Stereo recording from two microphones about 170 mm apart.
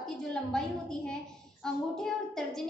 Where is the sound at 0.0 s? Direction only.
5° left (ahead or behind).